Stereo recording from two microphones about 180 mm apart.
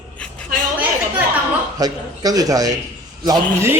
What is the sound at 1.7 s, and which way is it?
A man's voice, 20° right (ahead or behind).